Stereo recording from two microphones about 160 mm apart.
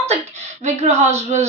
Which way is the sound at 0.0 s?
45° right (ahead or behind).